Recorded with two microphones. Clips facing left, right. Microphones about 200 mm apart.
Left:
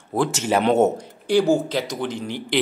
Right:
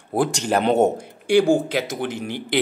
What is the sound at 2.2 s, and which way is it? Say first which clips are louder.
Speech: even; 55° right (ahead or behind).